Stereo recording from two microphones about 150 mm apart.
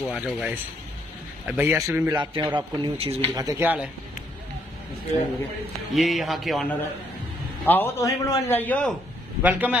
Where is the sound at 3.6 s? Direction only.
10° right (ahead or behind).